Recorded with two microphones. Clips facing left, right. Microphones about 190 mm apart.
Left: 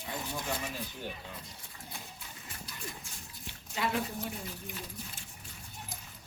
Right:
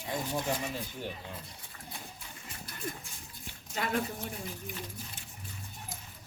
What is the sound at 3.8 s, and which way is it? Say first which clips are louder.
Speech: right 1 dB; 50° right (ahead or behind).